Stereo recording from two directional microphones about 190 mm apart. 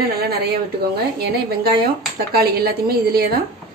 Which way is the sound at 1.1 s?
55° right (ahead or behind).